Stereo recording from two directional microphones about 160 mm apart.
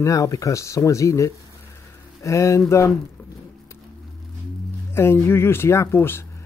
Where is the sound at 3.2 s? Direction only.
10° left (ahead or behind).